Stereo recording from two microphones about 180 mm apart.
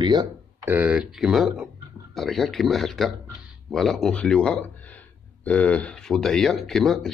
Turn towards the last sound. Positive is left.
turn(degrees=0)  # may be behind; listen again after turning